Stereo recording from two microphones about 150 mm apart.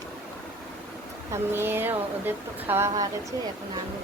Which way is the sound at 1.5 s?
15° right (ahead or behind).